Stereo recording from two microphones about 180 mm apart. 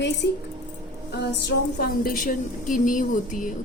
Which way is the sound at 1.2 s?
65° left (ahead or behind).